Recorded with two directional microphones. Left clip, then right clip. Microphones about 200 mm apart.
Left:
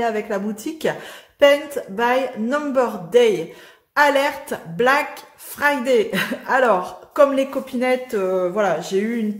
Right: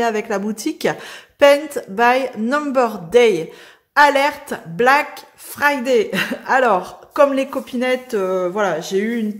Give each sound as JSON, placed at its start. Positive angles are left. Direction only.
{"t": 0.0, "sound": "a woman's voice", "side_deg": -35}